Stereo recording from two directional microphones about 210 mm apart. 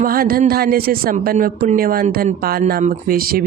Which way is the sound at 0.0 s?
45° right (ahead or behind).